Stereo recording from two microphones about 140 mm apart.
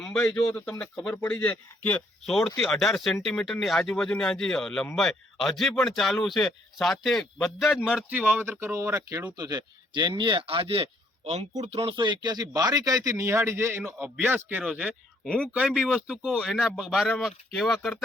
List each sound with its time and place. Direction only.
0.0 s a sound: 5° left (ahead or behind)
0.4 s speech: 10° left (ahead or behind)
8.3 s speech: 15° right (ahead or behind); by 10.8 s 40° right (ahead or behind)
11.3 s speech: 50° right (ahead or behind); by 17.9 s centre (ahead or behind)